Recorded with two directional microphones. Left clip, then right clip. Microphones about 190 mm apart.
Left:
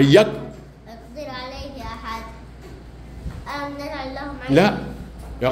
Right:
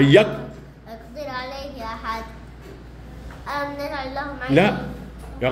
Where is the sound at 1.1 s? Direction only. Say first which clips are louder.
Right 2 dB; 10° right (ahead or behind).